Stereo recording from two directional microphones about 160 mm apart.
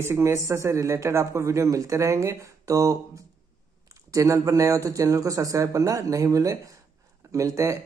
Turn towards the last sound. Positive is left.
turn(degrees=-20)  # may be behind; listen again after turning